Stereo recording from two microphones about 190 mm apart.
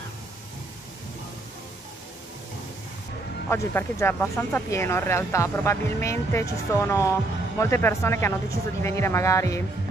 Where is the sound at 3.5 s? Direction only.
15° left (ahead or behind).